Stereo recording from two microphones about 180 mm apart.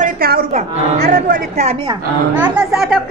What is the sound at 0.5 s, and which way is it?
Speech, 40° right (ahead or behind).